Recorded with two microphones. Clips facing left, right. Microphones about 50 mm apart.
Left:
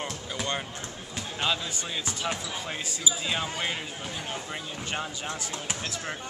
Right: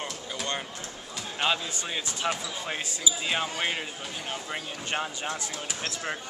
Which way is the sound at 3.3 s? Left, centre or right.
Centre.